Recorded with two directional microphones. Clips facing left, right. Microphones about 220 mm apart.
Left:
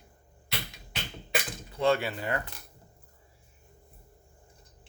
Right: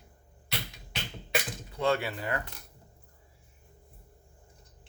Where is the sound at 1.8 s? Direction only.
30° left (ahead or behind).